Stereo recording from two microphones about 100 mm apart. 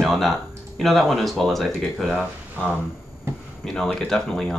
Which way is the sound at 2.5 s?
15° left (ahead or behind).